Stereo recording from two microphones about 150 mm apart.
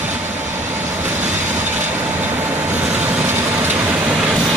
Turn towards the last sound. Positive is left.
turn(degrees=-5)  # may be behind; listen again after turning